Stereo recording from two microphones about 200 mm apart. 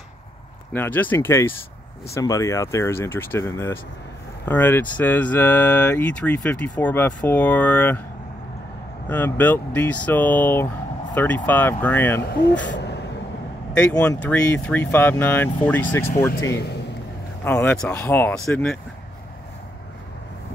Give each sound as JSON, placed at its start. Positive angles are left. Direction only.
{"t": 0.7, "sound": "speech", "side_deg": 10}
{"t": 9.1, "sound": "speech", "side_deg": 10}
{"t": 12.3, "sound": "speech", "side_deg": 55}
{"t": 12.6, "sound": "vehicle", "side_deg": 60}
{"t": 13.7, "sound": "speech", "side_deg": 5}
{"t": 17.5, "sound": "speech", "side_deg": 5}